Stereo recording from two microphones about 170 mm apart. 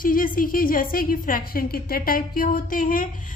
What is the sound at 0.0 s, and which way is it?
A woman's voice, 55° left (ahead or behind).